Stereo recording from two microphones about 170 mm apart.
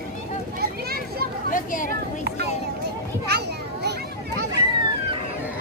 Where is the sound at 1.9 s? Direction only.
75° right (ahead or behind).